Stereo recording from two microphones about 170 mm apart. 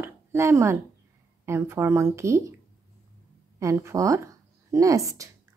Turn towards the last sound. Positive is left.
turn(degrees=-20)  # may be behind; listen again after turning